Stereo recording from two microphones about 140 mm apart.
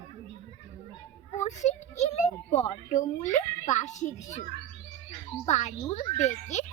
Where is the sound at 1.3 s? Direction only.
55° left (ahead or behind).